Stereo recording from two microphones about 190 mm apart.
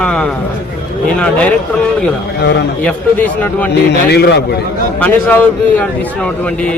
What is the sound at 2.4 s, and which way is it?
Speech, 65° left (ahead or behind).